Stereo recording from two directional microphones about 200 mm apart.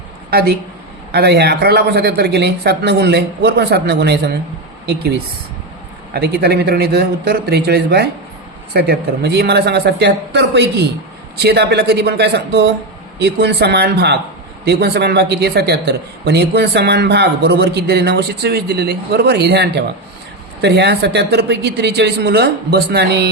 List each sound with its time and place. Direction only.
0.3 s a woman's voice: 50° right (ahead or behind)
6.1 s a man's voice: 55° right (ahead or behind)